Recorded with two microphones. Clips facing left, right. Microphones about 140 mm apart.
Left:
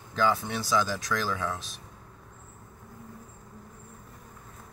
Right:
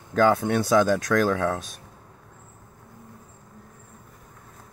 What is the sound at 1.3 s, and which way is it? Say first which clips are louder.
Speech: right 8 dB; 90° right.